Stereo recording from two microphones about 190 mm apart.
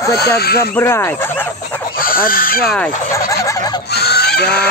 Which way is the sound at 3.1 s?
15° left (ahead or behind).